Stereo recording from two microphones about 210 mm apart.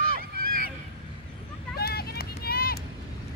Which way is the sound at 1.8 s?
50° left (ahead or behind).